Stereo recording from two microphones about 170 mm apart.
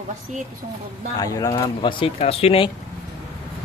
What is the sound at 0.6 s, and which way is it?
Speech, 40° right (ahead or behind).